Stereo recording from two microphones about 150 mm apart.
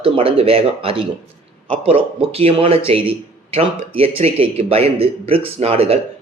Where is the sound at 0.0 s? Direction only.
40° right (ahead or behind).